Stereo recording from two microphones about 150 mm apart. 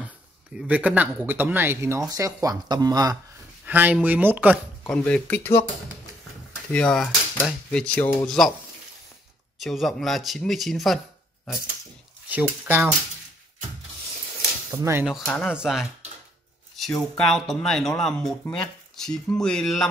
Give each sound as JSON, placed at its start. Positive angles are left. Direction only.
{"t": 0.6, "sound": "speech", "side_deg": -10}
{"t": 3.6, "sound": "speech", "side_deg": -10}
{"t": 4.8, "sound": "speech", "side_deg": 5}
{"t": 6.7, "sound": "speech", "side_deg": 5}
{"t": 9.6, "sound": "speech", "side_deg": 0}
{"t": 12.3, "sound": "speech", "side_deg": -10}
{"t": 14.7, "sound": "speech", "side_deg": -15}
{"t": 15.0, "sound": "speech", "side_deg": 0}